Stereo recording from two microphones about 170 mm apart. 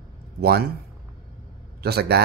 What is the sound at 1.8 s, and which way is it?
Speech, 70° right (ahead or behind).